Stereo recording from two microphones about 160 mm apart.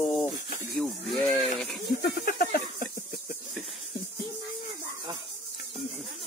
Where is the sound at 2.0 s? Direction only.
75° left (ahead or behind).